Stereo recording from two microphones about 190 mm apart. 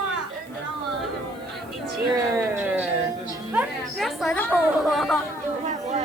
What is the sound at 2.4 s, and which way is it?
Music, 10° right (ahead or behind).